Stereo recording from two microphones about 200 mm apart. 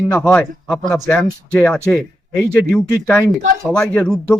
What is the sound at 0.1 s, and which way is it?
Speech, 5° left (ahead or behind).